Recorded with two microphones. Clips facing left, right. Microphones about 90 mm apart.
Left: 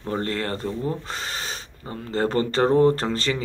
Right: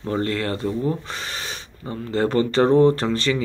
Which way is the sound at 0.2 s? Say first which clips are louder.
Right 3 dB; 35° left (ahead or behind).